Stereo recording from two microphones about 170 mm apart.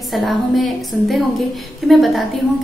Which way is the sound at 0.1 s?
Centre (ahead or behind).